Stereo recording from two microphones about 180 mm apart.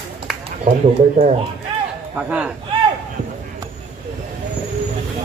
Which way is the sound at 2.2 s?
5° right (ahead or behind).